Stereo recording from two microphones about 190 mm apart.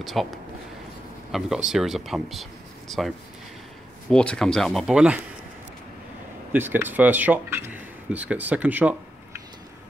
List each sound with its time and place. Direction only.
0.0 s speech: centre (ahead or behind)
1.3 s speech: centre (ahead or behind)
6.5 s speech: 10° right (ahead or behind)